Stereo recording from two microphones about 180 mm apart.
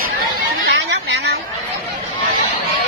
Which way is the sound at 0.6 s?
65° right (ahead or behind).